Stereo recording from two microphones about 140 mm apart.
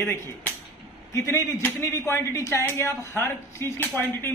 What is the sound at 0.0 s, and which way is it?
A man's voice, 15° left (ahead or behind).